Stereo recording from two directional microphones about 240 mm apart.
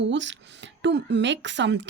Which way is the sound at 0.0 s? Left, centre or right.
Right.